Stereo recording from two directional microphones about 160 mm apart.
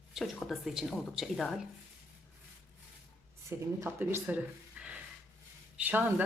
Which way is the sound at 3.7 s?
15° right (ahead or behind).